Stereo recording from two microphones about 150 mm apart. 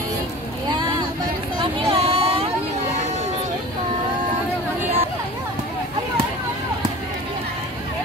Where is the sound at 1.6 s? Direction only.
40° right (ahead or behind).